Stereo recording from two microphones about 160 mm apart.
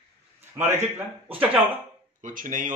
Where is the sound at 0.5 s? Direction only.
15° right (ahead or behind).